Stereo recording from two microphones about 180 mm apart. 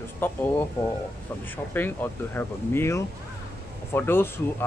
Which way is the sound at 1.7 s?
10° left (ahead or behind).